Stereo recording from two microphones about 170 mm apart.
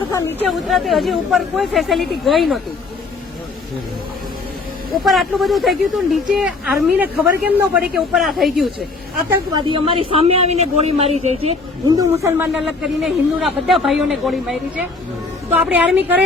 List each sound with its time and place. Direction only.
0.1 s speech: 15° left (ahead or behind)
0.4 s speech: centre (ahead or behind)
4.9 s speech: centre (ahead or behind)
9.3 s a man's voice: 25° right (ahead or behind)
11.9 s a woman's voice: 20° right (ahead or behind)
12.5 s a woman's voice: centre (ahead or behind)